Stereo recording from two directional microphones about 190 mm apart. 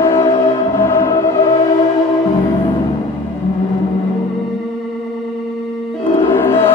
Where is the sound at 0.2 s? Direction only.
30° left (ahead or behind).